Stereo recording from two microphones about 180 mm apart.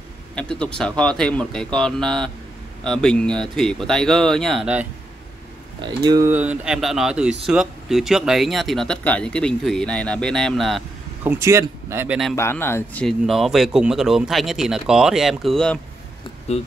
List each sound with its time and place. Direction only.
0.4 s speech: 5° left (ahead or behind)
5.8 s speech: 25° right (ahead or behind)
6.3 s speech: 10° right (ahead or behind)
11.2 s speech: 15° right (ahead or behind)
12.4 s speech: 15° left (ahead or behind)